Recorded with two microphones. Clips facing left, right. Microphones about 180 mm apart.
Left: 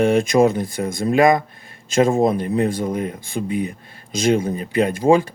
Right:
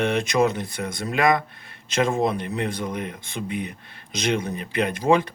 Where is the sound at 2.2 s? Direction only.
40° left (ahead or behind).